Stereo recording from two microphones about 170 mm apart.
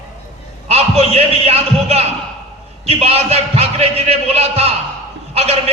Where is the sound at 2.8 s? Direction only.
35° right (ahead or behind).